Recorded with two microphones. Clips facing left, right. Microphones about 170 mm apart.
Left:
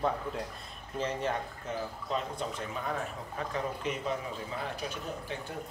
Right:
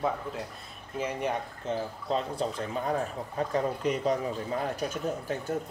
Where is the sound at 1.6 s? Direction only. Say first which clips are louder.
Right 5 dB; 30° right (ahead or behind).